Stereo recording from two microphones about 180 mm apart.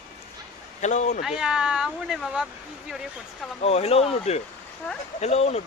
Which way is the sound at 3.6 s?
35° left (ahead or behind).